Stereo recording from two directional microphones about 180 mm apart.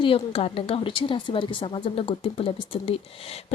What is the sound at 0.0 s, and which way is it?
A woman's voice, 30° left (ahead or behind).